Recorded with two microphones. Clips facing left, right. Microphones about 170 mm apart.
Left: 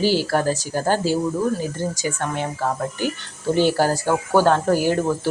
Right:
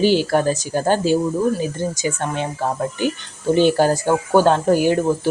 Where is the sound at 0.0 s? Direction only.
20° right (ahead or behind).